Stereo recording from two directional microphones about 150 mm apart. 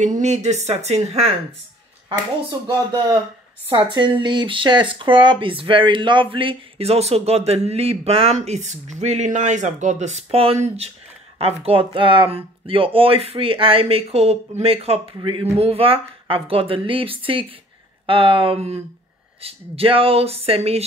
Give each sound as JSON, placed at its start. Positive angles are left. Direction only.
{"t": 0.0, "sound": "speech", "side_deg": -50}
{"t": 3.8, "sound": "speech", "side_deg": -30}